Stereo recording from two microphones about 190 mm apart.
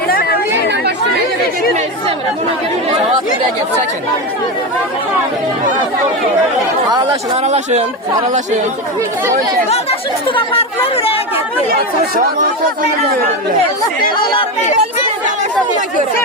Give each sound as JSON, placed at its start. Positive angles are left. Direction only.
{"t": 0.1, "sound": "chatter", "side_deg": 55}
{"t": 7.4, "sound": "speech", "side_deg": -35}
{"t": 10.2, "sound": "speech", "side_deg": 30}
{"t": 14.3, "sound": "speech", "side_deg": 35}